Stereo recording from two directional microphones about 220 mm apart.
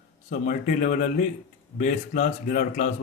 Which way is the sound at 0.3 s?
40° left (ahead or behind).